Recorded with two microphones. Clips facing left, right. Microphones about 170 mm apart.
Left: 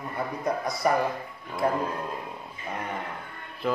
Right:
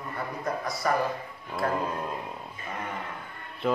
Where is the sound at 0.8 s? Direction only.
20° left (ahead or behind).